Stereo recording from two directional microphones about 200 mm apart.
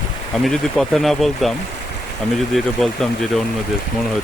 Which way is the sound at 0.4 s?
Centre (ahead or behind).